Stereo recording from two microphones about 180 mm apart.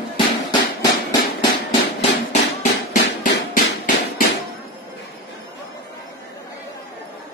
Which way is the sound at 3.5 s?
50° left (ahead or behind).